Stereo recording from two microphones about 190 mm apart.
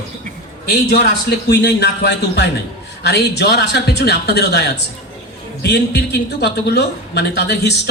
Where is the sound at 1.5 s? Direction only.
60° left (ahead or behind).